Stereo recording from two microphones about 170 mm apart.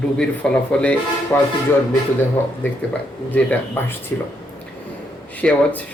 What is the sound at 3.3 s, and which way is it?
Speech, 10° left (ahead or behind).